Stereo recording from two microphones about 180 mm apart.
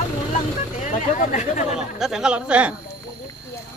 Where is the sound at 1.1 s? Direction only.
45° left (ahead or behind).